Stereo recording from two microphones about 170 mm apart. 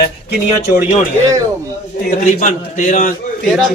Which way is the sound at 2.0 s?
45° left (ahead or behind).